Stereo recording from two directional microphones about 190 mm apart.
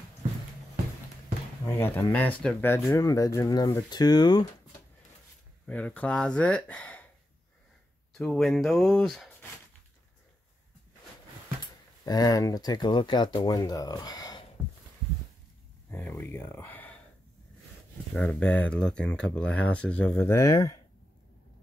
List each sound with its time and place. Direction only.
1.7 s speech: 10° left (ahead or behind)
5.7 s speech: 10° left (ahead or behind)
8.1 s speech: centre (ahead or behind)
11.6 s speech: 20° left (ahead or behind)
15.9 s a sound: 10° left (ahead or behind)
18.1 s speech: 5° left (ahead or behind)